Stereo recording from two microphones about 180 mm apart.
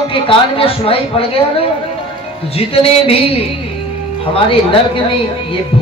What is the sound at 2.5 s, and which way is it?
Speech, 35° left (ahead or behind).